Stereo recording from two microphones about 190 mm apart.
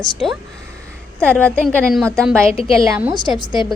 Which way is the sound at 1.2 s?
5° left (ahead or behind).